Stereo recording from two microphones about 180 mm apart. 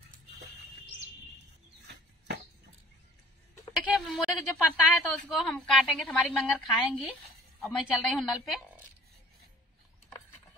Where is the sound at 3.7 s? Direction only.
Centre (ahead or behind).